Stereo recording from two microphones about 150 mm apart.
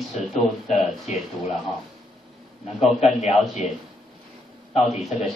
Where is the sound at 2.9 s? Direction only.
45° left (ahead or behind).